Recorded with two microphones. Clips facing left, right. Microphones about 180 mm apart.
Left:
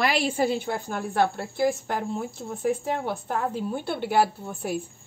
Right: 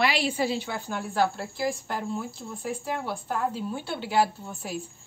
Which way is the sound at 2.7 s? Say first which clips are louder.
Left 5 dB; 55° left (ahead or behind).